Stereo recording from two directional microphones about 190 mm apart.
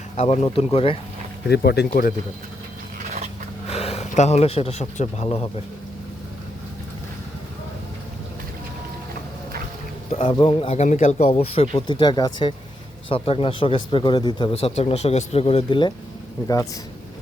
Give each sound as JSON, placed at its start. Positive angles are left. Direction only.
{"t": 0.2, "sound": "speech", "side_deg": 35}
{"t": 1.5, "sound": "speech", "side_deg": 60}
{"t": 3.7, "sound": "speech", "side_deg": 35}
{"t": 10.1, "sound": "speech", "side_deg": 30}